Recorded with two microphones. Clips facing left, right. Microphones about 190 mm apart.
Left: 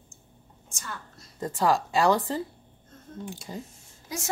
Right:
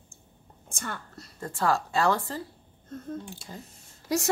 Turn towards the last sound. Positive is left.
turn(degrees=-70)  # may be behind; listen again after turning